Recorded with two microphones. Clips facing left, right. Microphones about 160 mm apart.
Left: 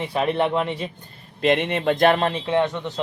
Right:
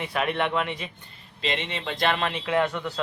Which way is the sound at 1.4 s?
55° left (ahead or behind).